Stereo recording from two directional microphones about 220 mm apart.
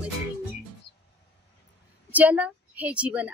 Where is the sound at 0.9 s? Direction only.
50° left (ahead or behind).